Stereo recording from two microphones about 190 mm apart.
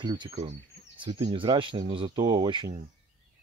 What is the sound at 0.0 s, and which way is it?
Speech, 20° right (ahead or behind).